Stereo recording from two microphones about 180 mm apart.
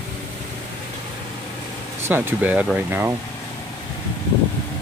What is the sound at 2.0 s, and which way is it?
Speech, 10° right (ahead or behind).